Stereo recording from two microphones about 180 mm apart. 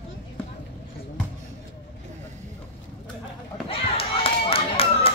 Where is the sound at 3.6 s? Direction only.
30° left (ahead or behind).